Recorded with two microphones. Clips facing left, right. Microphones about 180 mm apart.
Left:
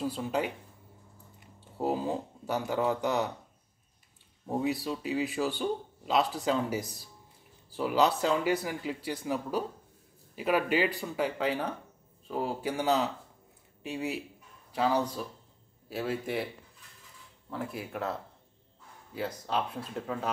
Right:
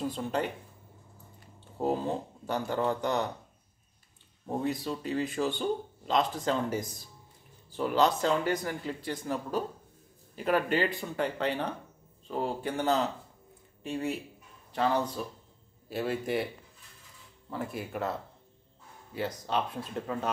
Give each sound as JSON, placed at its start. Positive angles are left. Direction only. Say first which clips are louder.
{"t": 0.0, "sound": "speech", "louder": "even", "side_deg": 5}
{"t": 1.8, "sound": "speech", "louder": "right 1 dB", "side_deg": 5}
{"t": 4.5, "sound": "speech", "louder": "left 1 dB", "side_deg": 5}
{"t": 17.5, "sound": "speech", "louder": "right 1 dB", "side_deg": 0}
{"t": 19.1, "sound": "speech", "louder": "right 1 dB", "side_deg": 0}